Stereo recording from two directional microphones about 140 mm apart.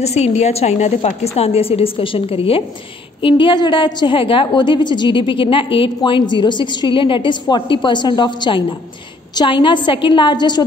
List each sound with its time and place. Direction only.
0.0 s a woman's voice: 50° left (ahead or behind); by 10.6 s 30° left (ahead or behind)